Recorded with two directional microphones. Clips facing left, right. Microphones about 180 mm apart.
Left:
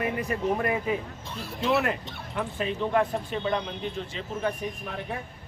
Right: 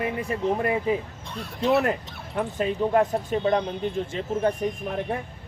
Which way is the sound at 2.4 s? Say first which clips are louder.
Right 4 dB; 40° right (ahead or behind).